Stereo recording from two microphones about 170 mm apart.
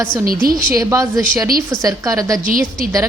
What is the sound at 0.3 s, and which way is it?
Speech, 60° right (ahead or behind).